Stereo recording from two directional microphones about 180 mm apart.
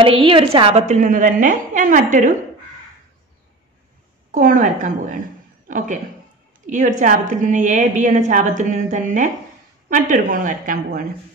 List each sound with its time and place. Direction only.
0.0 s a woman's voice: 30° right (ahead or behind)
4.3 s a woman's voice: 45° right (ahead or behind)